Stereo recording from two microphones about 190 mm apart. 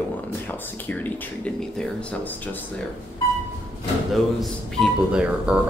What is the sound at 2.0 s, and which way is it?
Speech, 5° left (ahead or behind).